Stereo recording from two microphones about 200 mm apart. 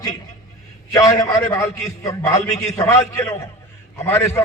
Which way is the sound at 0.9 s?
15° left (ahead or behind).